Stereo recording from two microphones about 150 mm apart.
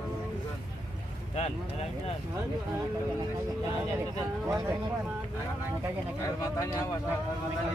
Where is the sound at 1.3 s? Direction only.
45° left (ahead or behind).